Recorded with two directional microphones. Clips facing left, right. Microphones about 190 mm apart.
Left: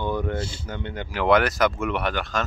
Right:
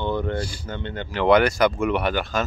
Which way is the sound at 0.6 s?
10° left (ahead or behind).